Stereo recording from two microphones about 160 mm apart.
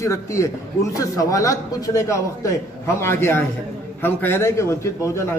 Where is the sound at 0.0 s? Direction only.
20° left (ahead or behind).